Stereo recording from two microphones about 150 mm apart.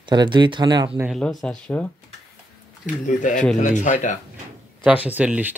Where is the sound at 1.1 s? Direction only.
Centre (ahead or behind).